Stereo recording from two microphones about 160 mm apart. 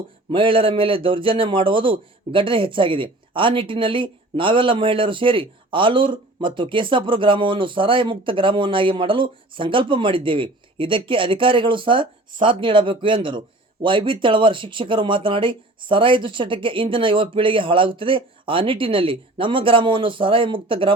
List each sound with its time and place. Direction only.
0.3 s a man's voice: 35° right (ahead or behind)